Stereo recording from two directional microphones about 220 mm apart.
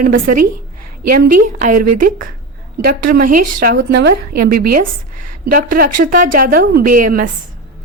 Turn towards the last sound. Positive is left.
turn(degrees=-40)  # may be behind; listen again after turning